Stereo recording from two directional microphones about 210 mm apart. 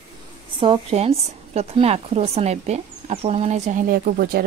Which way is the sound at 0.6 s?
25° right (ahead or behind).